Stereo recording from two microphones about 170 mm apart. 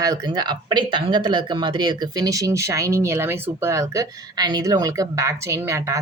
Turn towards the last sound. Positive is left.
turn(degrees=-15)  # may be behind; listen again after turning